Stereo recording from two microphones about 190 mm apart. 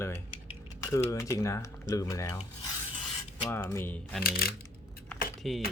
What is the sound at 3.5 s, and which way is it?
Speech, 15° left (ahead or behind).